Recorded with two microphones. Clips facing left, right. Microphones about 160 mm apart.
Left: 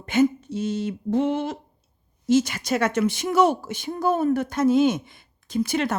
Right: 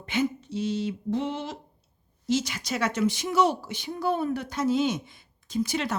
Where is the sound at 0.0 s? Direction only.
45° left (ahead or behind).